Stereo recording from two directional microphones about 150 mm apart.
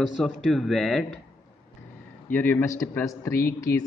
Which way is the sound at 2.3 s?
10° left (ahead or behind).